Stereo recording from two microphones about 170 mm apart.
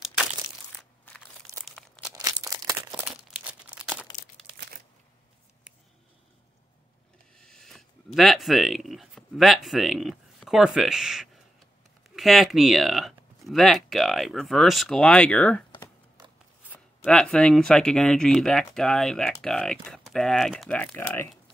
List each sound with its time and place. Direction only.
0.7 s crushing: 5° left (ahead or behind)
1.6 s crumpling: centre (ahead or behind)
2.4 s crumpling: 20° right (ahead or behind)
3.1 s crumpling: 10° right (ahead or behind)
7.3 s a sound: 5° left (ahead or behind)
12.2 s speech: centre (ahead or behind)
17.0 s speech: 5° left (ahead or behind)